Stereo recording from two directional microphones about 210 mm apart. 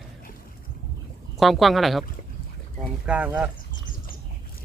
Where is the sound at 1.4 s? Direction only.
Centre (ahead or behind).